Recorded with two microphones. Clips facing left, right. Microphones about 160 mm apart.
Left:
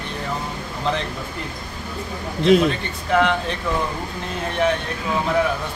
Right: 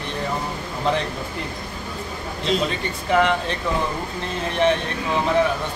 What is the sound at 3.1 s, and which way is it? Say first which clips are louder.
Speech: even; centre (ahead or behind).